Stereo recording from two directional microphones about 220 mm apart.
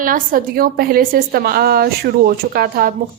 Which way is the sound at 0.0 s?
40° right (ahead or behind).